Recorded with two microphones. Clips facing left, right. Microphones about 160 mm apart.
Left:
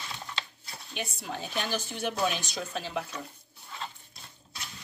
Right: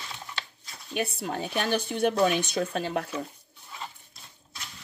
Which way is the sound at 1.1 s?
55° right (ahead or behind).